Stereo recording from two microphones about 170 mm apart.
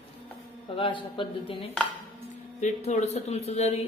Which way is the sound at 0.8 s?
30° left (ahead or behind).